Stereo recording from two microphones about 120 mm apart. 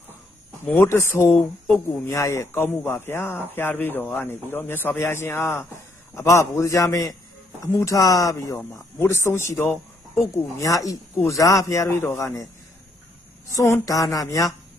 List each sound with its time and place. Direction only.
0.7 s speech: 20° left (ahead or behind)
13.5 s speech: 25° left (ahead or behind)